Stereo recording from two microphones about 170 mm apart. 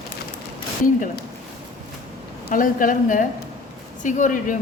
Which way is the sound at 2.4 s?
55° left (ahead or behind).